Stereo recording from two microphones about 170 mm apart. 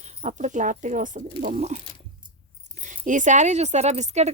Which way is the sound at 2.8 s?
50° right (ahead or behind).